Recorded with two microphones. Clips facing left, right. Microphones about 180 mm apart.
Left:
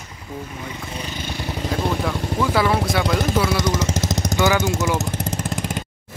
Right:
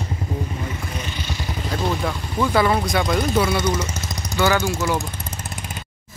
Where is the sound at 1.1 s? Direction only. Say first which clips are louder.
Left 2 dB; 50° left (ahead or behind).